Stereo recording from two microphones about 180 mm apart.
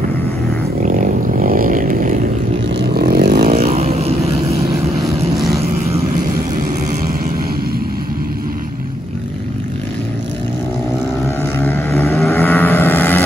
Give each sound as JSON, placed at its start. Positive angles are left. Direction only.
{"t": 0.8, "sound": "a sound", "side_deg": -45}
{"t": 2.6, "sound": "vehicle", "side_deg": -70}
{"t": 3.5, "sound": "vehicle", "side_deg": -35}
{"t": 5.0, "sound": "vehicle", "side_deg": 0}
{"t": 6.9, "sound": "vehicle", "side_deg": -45}
{"t": 11.2, "sound": "vehicle", "side_deg": 15}
{"t": 12.3, "sound": "boat", "side_deg": 10}